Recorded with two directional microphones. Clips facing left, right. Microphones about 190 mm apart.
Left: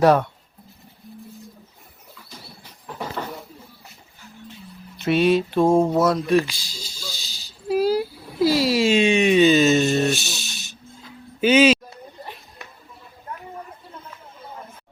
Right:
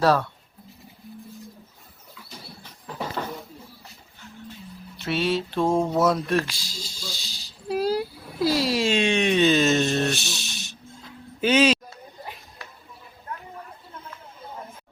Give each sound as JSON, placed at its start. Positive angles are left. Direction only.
{"t": 0.0, "sound": "speech", "side_deg": 20}
{"t": 4.9, "sound": "mantra", "side_deg": 15}
{"t": 5.9, "sound": "a sound", "side_deg": 0}
{"t": 11.3, "sound": "speech", "side_deg": 0}